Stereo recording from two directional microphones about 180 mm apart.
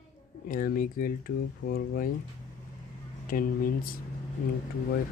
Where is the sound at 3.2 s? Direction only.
50° left (ahead or behind).